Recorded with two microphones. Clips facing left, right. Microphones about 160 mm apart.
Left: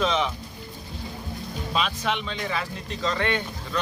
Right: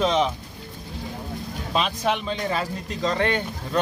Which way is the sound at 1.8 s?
40° right (ahead or behind).